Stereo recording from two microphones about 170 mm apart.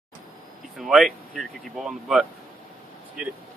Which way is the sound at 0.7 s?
Centre (ahead or behind).